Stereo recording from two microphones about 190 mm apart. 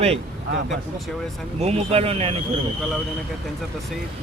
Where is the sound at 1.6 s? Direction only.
35° right (ahead or behind).